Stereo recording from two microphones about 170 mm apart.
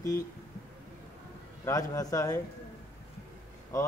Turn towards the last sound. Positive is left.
turn(degrees=20)  # may be behind; listen again after turning